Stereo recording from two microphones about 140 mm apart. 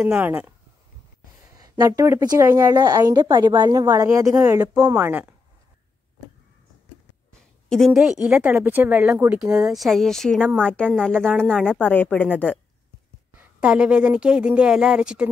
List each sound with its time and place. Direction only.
0.0 s a woman's voice: 10° right (ahead or behind)
1.5 s a woman's voice: 25° right (ahead or behind)
7.7 s a woman's voice: centre (ahead or behind); by 9.4 s 15° right (ahead or behind)
9.7 s a woman's voice: centre (ahead or behind)
13.4 s a woman's voice: 10° right (ahead or behind)